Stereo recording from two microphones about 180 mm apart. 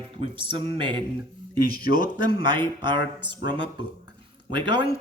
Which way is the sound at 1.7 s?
55° left (ahead or behind).